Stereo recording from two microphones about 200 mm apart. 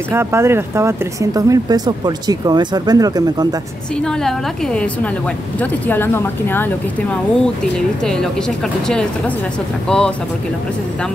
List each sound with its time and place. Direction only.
0.1 s speech: 15° right (ahead or behind)
3.9 s speech: 5° left (ahead or behind)